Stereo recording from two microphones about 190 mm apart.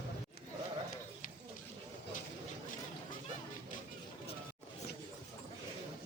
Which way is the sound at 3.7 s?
45° left (ahead or behind).